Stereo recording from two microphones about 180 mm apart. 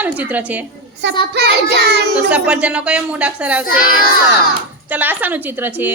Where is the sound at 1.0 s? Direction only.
75° right (ahead or behind).